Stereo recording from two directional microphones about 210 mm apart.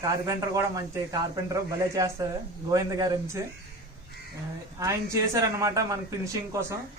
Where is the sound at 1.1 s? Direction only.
15° right (ahead or behind).